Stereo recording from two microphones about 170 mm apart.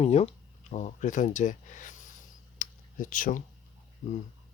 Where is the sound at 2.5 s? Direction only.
50° left (ahead or behind).